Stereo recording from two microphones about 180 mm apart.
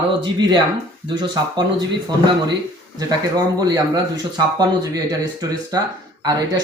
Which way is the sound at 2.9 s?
20° right (ahead or behind).